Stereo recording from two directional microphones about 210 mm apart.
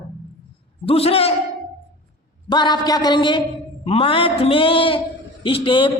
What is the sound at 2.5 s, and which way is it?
A man's voice, 20° left (ahead or behind).